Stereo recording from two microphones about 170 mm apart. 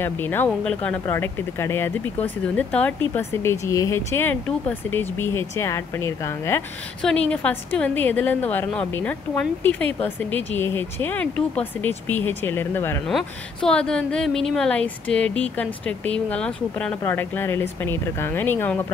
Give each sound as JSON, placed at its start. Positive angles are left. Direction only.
{"t": 0.0, "sound": "speech", "side_deg": 10}
{"t": 7.0, "sound": "speech", "side_deg": 5}